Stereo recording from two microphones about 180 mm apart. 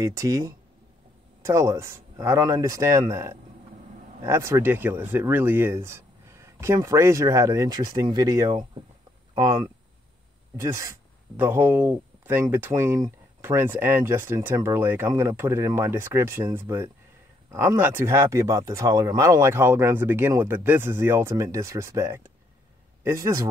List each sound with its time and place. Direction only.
0.0 s speech: 20° right (ahead or behind)